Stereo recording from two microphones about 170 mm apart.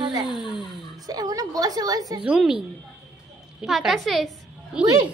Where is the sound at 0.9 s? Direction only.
20° right (ahead or behind).